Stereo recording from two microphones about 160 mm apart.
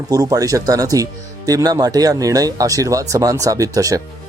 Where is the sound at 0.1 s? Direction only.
25° right (ahead or behind).